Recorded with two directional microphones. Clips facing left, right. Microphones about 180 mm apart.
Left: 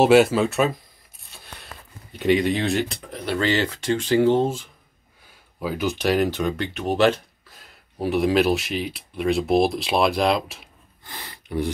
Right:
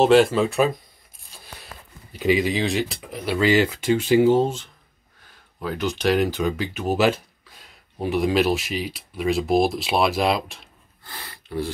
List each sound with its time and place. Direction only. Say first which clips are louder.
0.0 s speech: even; 5° left (ahead or behind)
1.3 s a sound: even; centre (ahead or behind)
2.1 s speech: left 1 dB; centre (ahead or behind)
5.6 s speech: left 1 dB; 5° left (ahead or behind)
11.1 s gasp: left 2 dB; 15° left (ahead or behind)